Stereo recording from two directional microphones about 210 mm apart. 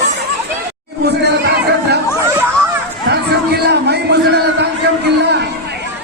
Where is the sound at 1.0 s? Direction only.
50° right (ahead or behind).